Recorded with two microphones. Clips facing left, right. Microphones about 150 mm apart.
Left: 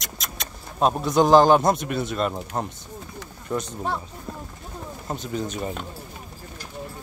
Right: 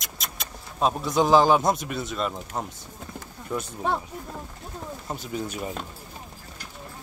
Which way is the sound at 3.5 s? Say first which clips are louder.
Left 3 dB; 30° left (ahead or behind).